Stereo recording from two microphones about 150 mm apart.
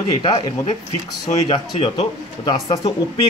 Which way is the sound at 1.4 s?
35° left (ahead or behind).